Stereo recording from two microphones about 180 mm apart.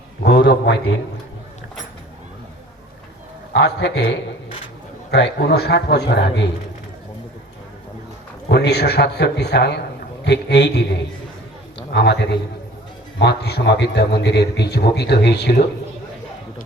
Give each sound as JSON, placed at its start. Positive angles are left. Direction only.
{"t": 0.3, "sound": "a man's voice", "side_deg": 65}
{"t": 3.5, "sound": "a man's voice", "side_deg": 70}
{"t": 8.4, "sound": "a man's voice", "side_deg": 65}
{"t": 11.9, "sound": "a man's voice", "side_deg": 70}